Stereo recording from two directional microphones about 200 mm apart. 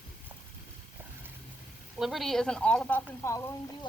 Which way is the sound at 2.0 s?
Centre (ahead or behind).